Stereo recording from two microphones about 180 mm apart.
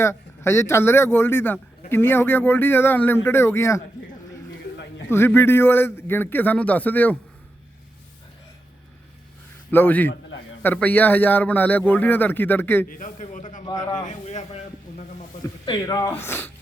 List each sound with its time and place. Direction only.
0.0 s a man's voice: 15° left (ahead or behind)
5.0 s a man's voice: 15° left (ahead or behind)
9.7 s a man's voice: 10° left (ahead or behind)
10.1 s a sound: 90° left
10.6 s a man's voice: 10° left (ahead or behind)
12.9 s a man's voice: 45° left (ahead or behind)
13.7 s speech: 25° left (ahead or behind)
14.0 s speech: 40° left (ahead or behind)
15.6 s speech: 25° left (ahead or behind)